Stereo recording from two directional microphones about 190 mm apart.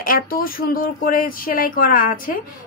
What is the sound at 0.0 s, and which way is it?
A woman's voice, 50° left (ahead or behind).